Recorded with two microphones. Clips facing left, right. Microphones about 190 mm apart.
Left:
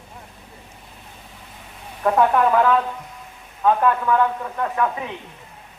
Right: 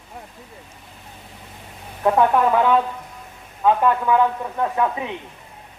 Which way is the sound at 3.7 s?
10° right (ahead or behind).